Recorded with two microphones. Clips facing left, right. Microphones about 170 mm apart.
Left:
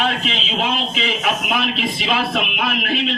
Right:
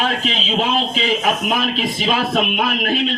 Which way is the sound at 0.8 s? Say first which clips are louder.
Right 4 dB; 40° right (ahead or behind).